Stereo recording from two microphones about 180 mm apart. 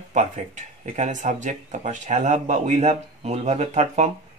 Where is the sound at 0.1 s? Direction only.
40° right (ahead or behind).